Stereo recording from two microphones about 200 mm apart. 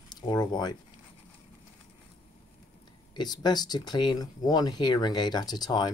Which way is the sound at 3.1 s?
20° left (ahead or behind).